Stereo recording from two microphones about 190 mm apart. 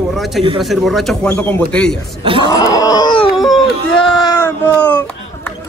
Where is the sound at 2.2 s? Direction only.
25° right (ahead or behind).